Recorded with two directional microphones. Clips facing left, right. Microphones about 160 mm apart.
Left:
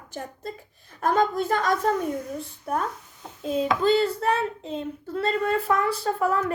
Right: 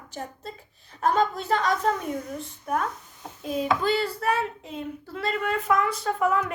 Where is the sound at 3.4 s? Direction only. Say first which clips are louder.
Left 3 dB; 30° left (ahead or behind).